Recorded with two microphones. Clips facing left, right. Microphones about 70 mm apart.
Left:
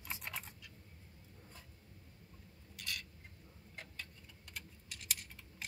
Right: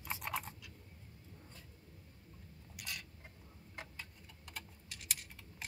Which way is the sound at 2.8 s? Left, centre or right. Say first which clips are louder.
Left 1 dB; right.